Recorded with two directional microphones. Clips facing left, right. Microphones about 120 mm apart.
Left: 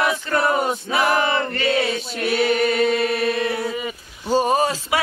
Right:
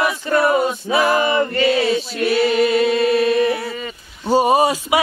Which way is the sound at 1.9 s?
Centre (ahead or behind).